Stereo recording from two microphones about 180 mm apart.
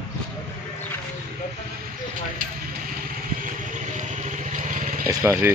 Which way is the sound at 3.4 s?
45° right (ahead or behind).